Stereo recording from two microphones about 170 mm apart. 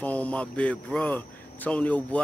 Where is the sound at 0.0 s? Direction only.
10° left (ahead or behind).